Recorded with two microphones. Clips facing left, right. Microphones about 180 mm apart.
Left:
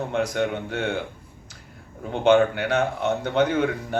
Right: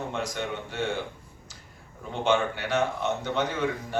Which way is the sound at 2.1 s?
60° left (ahead or behind).